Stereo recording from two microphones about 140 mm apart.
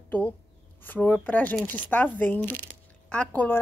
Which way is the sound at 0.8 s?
10° left (ahead or behind).